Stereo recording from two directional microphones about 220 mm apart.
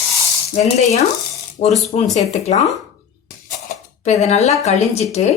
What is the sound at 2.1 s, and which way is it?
Speech, 30° left (ahead or behind).